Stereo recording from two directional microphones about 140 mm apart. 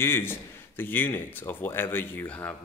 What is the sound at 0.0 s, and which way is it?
Speech, 15° left (ahead or behind).